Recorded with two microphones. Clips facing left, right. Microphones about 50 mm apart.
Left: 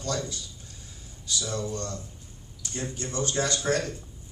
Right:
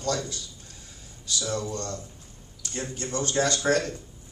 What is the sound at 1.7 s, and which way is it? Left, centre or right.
Speech, right.